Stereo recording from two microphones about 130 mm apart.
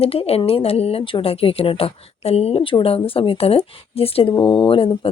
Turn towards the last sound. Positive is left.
turn(degrees=45)  # may be behind; listen again after turning